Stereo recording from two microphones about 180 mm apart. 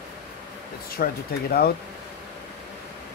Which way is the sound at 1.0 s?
55° left (ahead or behind).